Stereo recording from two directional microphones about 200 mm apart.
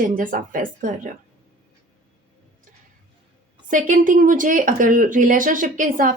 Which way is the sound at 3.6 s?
40° right (ahead or behind).